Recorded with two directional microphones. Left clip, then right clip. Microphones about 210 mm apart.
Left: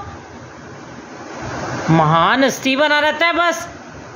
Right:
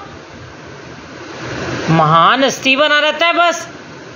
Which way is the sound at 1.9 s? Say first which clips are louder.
Right 4 dB; 15° left (ahead or behind).